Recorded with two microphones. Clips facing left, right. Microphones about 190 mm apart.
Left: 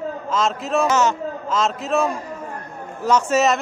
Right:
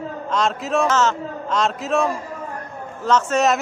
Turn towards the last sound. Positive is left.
turn(degrees=5)  # may be behind; listen again after turning